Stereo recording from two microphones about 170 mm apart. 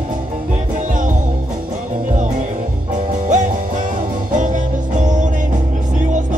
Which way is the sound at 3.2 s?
45° right (ahead or behind).